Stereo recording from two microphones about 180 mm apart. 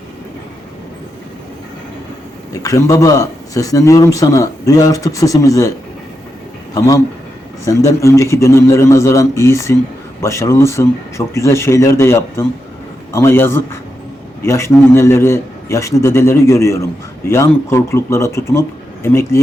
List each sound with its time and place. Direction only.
2.5 s a man's voice: 20° left (ahead or behind)
6.7 s a man's voice: 20° left (ahead or behind)